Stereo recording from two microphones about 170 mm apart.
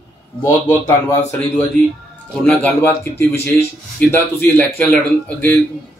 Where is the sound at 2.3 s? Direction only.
10° left (ahead or behind).